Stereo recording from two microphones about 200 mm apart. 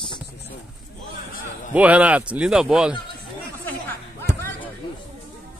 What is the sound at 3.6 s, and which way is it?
Chatter, 10° left (ahead or behind).